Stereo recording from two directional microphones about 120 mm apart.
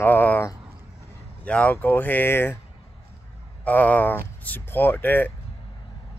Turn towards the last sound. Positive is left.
turn(degrees=15)  # may be behind; listen again after turning